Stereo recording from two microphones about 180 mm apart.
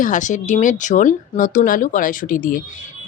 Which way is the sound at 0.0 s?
45° left (ahead or behind).